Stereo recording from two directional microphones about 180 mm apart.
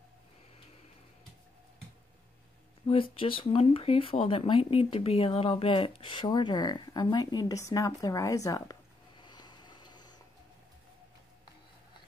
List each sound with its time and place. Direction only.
2.9 s speech: 30° left (ahead or behind)